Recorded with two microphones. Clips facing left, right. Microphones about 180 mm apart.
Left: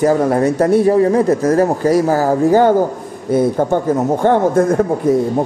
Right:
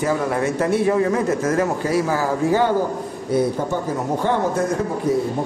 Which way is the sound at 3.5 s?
55° left (ahead or behind).